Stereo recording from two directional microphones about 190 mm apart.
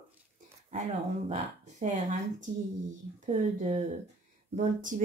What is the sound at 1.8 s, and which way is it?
Speech, 40° right (ahead or behind).